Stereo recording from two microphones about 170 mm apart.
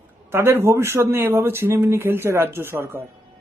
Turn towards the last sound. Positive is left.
turn(degrees=-15)  # may be behind; listen again after turning